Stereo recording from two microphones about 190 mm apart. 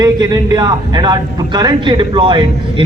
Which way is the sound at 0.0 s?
20° right (ahead or behind).